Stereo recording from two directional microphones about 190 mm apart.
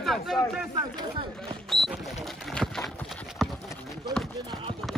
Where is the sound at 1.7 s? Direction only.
Centre (ahead or behind).